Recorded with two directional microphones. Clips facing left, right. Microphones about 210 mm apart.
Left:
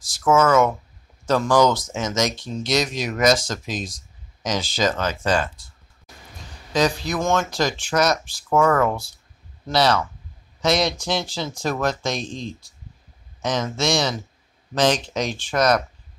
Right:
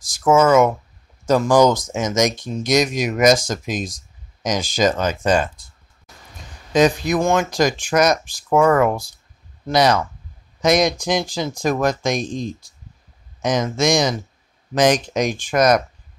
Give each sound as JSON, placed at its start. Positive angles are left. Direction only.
{"t": 0.0, "sound": "speech", "side_deg": -15}
{"t": 6.7, "sound": "speech", "side_deg": -20}